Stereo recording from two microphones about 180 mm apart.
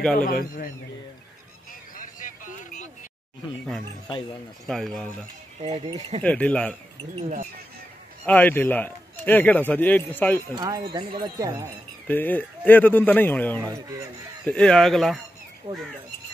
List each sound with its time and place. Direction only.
0.2 s a man's voice: 50° left (ahead or behind)
1.7 s a sound: 50° left (ahead or behind)
4.6 s speech: centre (ahead or behind)
5.9 s speech: 35° right (ahead or behind)
6.2 s a man's voice: 5° left (ahead or behind)
8.3 s a man's voice: 10° left (ahead or behind)
10.5 s speech: 25° right (ahead or behind)
12.1 s a man's voice: 10° left (ahead or behind)
13.7 s speech: 20° right (ahead or behind)
14.4 s speech: 5° left (ahead or behind)
15.7 s speech: 20° right (ahead or behind)